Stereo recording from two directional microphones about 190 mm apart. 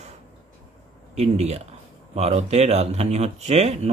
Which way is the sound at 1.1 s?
35° right (ahead or behind).